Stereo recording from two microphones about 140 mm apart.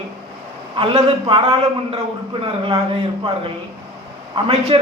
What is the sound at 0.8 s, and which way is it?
A man's voice, 40° right (ahead or behind).